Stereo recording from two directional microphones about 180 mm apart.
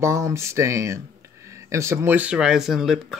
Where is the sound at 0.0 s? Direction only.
15° right (ahead or behind).